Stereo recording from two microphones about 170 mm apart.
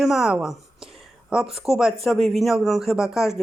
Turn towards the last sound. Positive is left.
turn(degrees=0)  # may be behind; listen again after turning